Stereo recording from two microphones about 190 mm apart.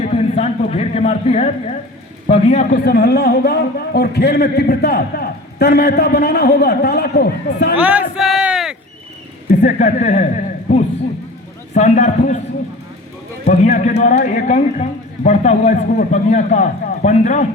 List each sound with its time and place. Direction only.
0.0 s a man's voice: 35° left (ahead or behind); by 7.8 s 55° left (ahead or behind)
7.8 s speech: 5° right (ahead or behind)
9.5 s speech: 45° left (ahead or behind)
11.7 s a man's voice: 40° left (ahead or behind)
13.4 s a man's voice: 40° left (ahead or behind)